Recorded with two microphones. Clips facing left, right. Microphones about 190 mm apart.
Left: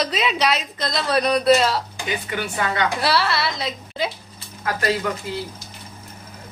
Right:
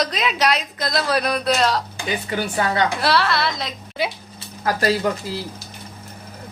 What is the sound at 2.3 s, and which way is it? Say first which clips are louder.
Speech: right 4 dB; 35° right (ahead or behind).